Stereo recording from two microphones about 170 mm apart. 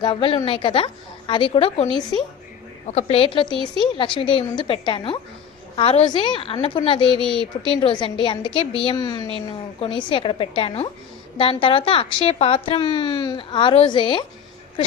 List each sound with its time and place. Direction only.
0.0 s a woman's voice: 30° left (ahead or behind)
7.2 s a woman's voice: centre (ahead or behind)
7.6 s a woman's voice: 30° left (ahead or behind)